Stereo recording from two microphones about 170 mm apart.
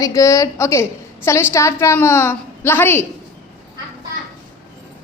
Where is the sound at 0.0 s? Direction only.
20° left (ahead or behind).